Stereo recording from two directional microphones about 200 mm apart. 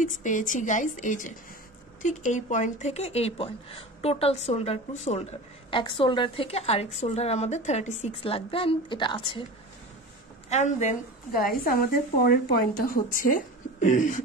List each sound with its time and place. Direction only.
0.0 s a woman's voice: 40° left (ahead or behind)
10.5 s a woman's voice: 35° left (ahead or behind)